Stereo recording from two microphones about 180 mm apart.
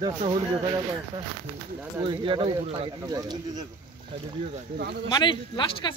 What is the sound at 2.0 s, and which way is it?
Speech, 25° right (ahead or behind).